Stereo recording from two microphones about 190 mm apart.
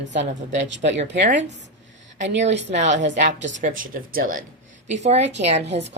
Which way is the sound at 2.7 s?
40° right (ahead or behind).